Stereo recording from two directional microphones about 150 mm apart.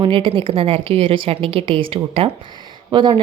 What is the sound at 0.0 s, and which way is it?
A woman's voice, 35° right (ahead or behind).